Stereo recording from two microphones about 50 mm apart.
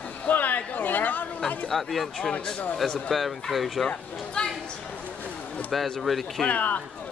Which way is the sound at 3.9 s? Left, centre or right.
Centre.